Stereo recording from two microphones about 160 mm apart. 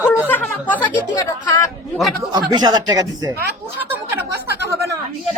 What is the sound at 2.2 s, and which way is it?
Speech, 25° right (ahead or behind).